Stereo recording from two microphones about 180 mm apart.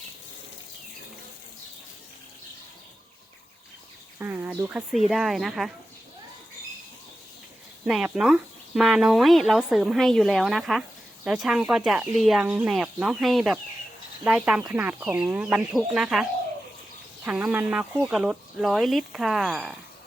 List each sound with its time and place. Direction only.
4.2 s speech: 10° right (ahead or behind)
7.9 s speech: 5° right (ahead or behind)
17.2 s speech: 10° right (ahead or behind)